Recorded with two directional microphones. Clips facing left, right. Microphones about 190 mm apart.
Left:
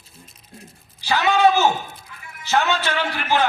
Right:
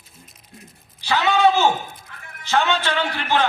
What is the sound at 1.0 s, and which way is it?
Speech, 10° left (ahead or behind).